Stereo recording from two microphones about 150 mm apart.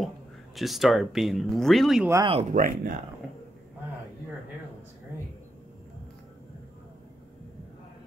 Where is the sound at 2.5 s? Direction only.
65° right (ahead or behind).